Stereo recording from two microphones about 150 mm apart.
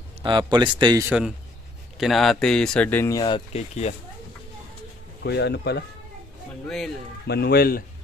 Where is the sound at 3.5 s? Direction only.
45° left (ahead or behind).